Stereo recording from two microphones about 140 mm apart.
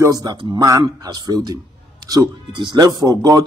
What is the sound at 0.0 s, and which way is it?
A man's voice, 25° right (ahead or behind).